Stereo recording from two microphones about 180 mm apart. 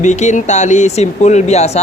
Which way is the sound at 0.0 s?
40° left (ahead or behind).